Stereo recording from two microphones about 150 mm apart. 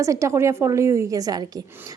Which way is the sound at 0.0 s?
20° right (ahead or behind).